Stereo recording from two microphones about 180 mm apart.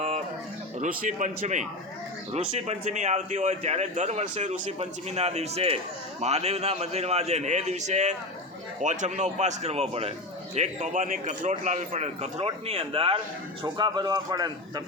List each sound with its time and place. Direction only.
0.8 s a man's voice: 45° right (ahead or behind); by 14.5 s 20° right (ahead or behind)